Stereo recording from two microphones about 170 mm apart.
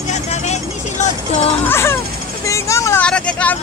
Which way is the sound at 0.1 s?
40° left (ahead or behind).